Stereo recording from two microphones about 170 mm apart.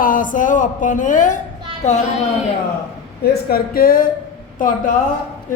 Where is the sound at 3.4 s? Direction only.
60° left (ahead or behind).